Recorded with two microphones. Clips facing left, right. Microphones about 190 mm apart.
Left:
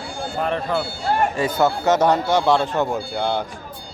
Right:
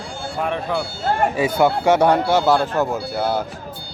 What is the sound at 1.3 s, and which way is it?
Speech, 10° right (ahead or behind).